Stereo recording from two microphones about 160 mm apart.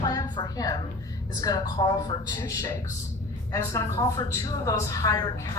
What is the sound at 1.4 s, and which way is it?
Speech, 25° left (ahead or behind).